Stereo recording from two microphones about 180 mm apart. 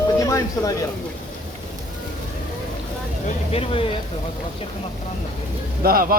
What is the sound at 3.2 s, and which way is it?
Speech, 35° left (ahead or behind).